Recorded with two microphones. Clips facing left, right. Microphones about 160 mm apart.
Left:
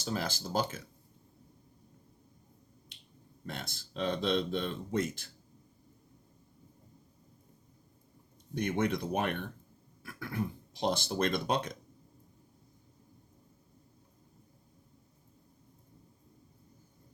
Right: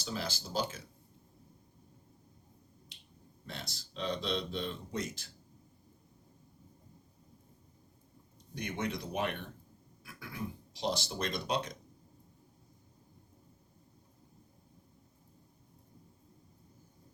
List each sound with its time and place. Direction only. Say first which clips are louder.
0.0 s speech: left 4 dB; 50° left (ahead or behind)
3.4 s speech: left 4 dB; 50° left (ahead or behind)
8.5 s speech: left 6 dB; 55° left (ahead or behind)